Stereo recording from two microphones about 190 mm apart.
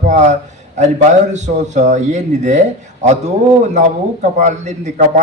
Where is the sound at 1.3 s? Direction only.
35° right (ahead or behind).